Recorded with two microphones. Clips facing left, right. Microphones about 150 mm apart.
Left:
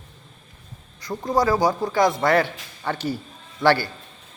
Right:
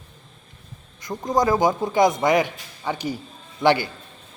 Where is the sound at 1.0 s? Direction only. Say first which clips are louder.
Even; 15° right (ahead or behind).